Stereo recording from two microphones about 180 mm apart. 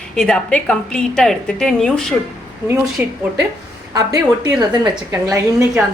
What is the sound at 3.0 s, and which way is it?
A woman's voice, 10° right (ahead or behind).